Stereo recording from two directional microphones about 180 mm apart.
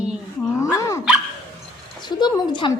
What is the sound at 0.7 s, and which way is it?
Speech, 15° left (ahead or behind).